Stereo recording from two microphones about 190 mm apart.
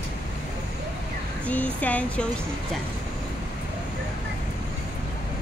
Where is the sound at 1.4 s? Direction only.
5° left (ahead or behind).